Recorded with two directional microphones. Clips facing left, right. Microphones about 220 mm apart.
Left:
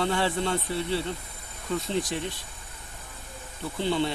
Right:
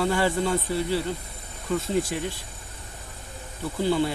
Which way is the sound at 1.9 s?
10° right (ahead or behind).